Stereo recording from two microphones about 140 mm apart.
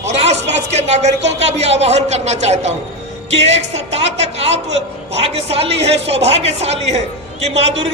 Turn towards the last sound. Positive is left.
turn(degrees=-50)  # may be behind; listen again after turning